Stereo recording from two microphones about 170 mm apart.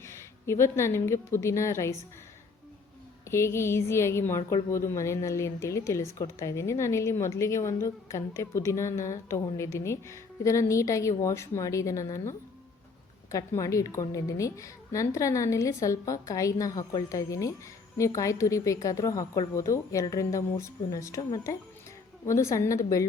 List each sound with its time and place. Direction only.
0.0 s a woman's voice: 15° left (ahead or behind)
3.2 s a woman's voice: 15° left (ahead or behind)